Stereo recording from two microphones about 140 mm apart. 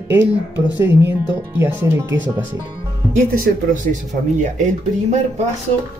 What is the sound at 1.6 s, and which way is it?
Speech, 20° right (ahead or behind).